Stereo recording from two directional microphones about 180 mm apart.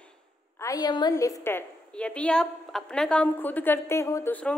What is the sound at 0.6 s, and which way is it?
A woman's voice, 20° left (ahead or behind).